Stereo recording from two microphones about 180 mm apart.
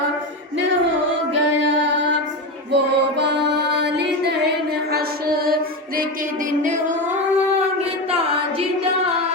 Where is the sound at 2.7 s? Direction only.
70° right (ahead or behind).